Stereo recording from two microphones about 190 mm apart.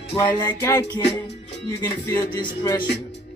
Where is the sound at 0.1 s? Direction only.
20° left (ahead or behind).